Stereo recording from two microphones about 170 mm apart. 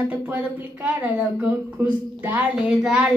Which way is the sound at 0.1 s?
10° right (ahead or behind).